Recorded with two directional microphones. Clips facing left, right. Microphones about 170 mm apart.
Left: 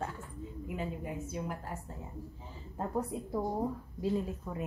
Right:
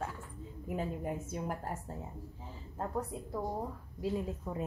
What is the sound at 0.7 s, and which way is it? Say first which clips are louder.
A woman's voice: right 3 dB; 45° right (ahead or behind).